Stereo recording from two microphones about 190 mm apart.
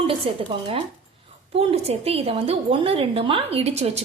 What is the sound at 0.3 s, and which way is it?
Speech, 30° right (ahead or behind).